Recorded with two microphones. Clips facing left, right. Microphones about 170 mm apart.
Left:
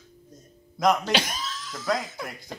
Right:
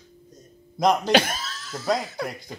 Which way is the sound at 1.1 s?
50° right (ahead or behind).